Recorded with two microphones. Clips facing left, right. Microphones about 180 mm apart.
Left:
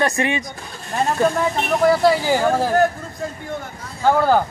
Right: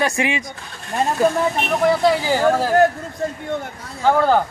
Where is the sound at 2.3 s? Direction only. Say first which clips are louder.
Right 1 dB; 15° left (ahead or behind).